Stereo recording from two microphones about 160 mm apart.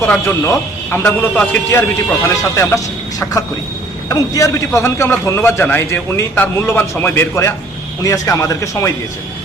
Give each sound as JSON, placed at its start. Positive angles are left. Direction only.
{"t": 0.0, "sound": "speech", "side_deg": 15}